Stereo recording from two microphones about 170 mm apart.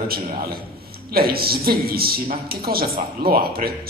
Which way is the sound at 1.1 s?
65° right (ahead or behind).